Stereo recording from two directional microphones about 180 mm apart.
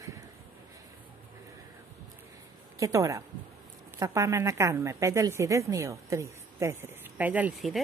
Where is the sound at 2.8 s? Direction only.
20° right (ahead or behind).